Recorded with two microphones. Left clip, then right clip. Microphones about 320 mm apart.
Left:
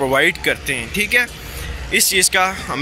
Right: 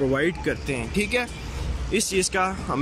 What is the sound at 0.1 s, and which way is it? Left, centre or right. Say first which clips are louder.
Speech: left 9 dB; centre.